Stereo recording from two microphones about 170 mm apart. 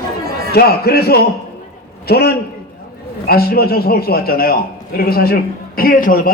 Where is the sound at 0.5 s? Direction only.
65° left (ahead or behind).